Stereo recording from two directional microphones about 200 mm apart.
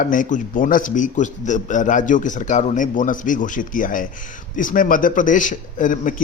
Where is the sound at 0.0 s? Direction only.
40° left (ahead or behind).